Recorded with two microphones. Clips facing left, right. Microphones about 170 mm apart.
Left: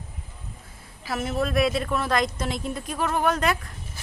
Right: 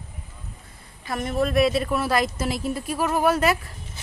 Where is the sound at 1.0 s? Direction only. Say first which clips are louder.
Right 2 dB; 5° left (ahead or behind).